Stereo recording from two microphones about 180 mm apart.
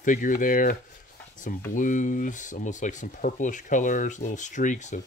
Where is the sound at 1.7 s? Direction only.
45° left (ahead or behind).